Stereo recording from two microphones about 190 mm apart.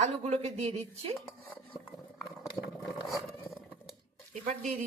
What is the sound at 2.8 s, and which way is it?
Vehicle, centre (ahead or behind).